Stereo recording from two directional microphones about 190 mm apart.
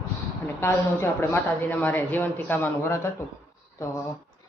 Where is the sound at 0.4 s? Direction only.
15° left (ahead or behind).